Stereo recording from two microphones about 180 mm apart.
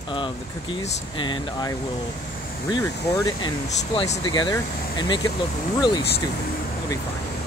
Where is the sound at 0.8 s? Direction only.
40° left (ahead or behind).